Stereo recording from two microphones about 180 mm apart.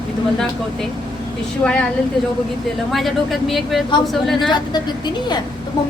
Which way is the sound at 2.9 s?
Centre (ahead or behind).